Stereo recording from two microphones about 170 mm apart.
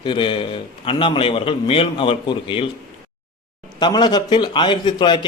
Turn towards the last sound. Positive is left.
turn(degrees=25)  # may be behind; listen again after turning